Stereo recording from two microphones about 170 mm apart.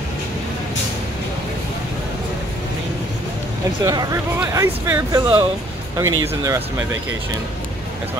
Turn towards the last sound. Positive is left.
turn(degrees=-15)  # may be behind; listen again after turning